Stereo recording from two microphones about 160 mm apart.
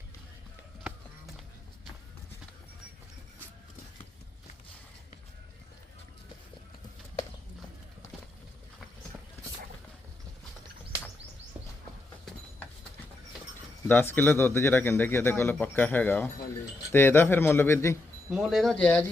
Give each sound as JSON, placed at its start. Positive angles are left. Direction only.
{"t": 13.8, "sound": "speech", "side_deg": 15}
{"t": 18.3, "sound": "speech", "side_deg": 0}